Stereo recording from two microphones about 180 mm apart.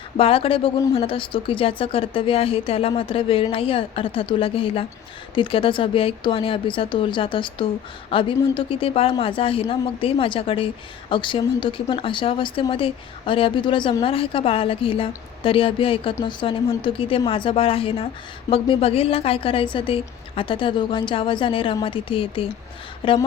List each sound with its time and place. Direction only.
0.2 s speech: 30° left (ahead or behind)